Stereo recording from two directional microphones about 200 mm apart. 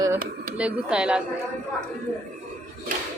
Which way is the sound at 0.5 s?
5° right (ahead or behind).